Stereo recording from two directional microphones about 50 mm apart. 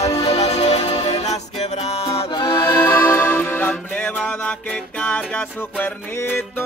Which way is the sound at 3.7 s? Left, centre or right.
Left.